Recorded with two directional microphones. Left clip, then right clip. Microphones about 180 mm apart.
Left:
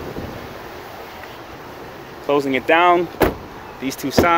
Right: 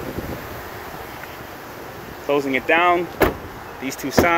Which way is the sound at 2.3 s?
30° left (ahead or behind).